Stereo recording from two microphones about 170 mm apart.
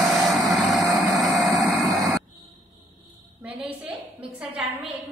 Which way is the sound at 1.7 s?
20° right (ahead or behind).